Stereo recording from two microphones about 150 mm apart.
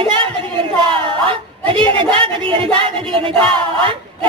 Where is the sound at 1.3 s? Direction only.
35° right (ahead or behind).